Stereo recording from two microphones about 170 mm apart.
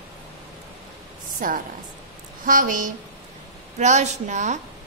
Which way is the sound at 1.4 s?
55° right (ahead or behind).